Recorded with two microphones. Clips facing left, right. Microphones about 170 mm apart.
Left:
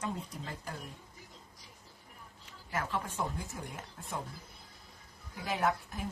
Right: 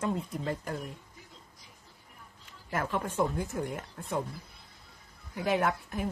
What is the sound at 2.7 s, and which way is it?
Speech, 55° right (ahead or behind).